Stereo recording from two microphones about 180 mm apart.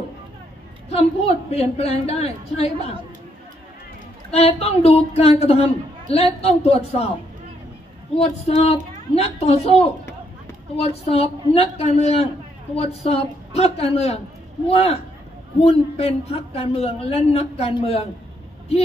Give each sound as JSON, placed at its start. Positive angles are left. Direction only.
{"t": 0.8, "sound": "speech", "side_deg": 35}
{"t": 4.3, "sound": "speech", "side_deg": 35}
{"t": 8.2, "sound": "speech", "side_deg": 35}